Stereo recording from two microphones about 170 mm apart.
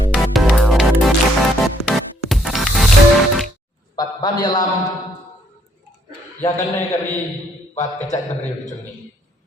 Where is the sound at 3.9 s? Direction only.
25° left (ahead or behind).